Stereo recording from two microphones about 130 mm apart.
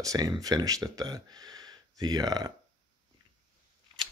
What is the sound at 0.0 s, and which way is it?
Speech, 30° right (ahead or behind).